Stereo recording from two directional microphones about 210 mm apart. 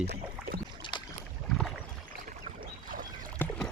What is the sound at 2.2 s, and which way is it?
Boat, 40° right (ahead or behind).